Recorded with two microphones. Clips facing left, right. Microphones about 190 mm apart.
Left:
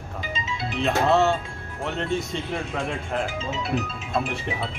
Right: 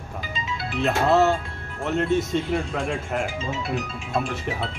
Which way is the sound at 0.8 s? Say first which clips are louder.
Right 1 dB; centre (ahead or behind).